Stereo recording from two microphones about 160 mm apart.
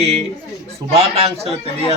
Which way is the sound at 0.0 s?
40° right (ahead or behind).